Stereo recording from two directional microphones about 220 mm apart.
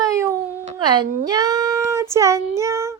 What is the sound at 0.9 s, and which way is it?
Child singing, 20° right (ahead or behind).